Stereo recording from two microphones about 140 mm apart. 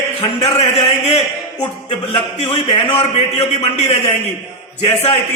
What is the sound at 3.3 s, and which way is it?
A man's voice, 50° left (ahead or behind).